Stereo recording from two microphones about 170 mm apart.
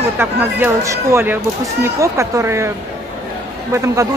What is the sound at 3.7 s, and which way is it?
Speech, 20° right (ahead or behind).